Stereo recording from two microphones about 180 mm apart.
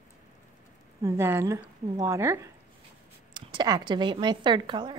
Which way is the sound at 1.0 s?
15° right (ahead or behind).